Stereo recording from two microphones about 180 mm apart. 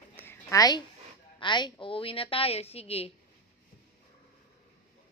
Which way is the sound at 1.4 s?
25° left (ahead or behind).